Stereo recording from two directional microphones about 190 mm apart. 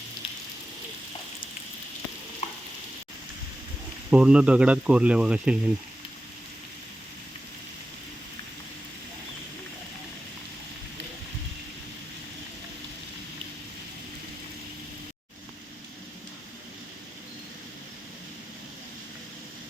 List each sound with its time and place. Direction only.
2.4 s frying: 35° left (ahead or behind)
4.1 s speech: 5° right (ahead or behind)